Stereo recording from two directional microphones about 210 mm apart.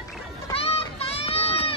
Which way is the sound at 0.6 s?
30° left (ahead or behind).